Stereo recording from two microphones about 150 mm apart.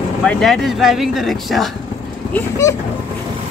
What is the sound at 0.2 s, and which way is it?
Speech, 5° left (ahead or behind).